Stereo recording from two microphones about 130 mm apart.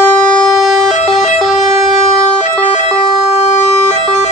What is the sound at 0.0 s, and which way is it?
Music, 10° left (ahead or behind).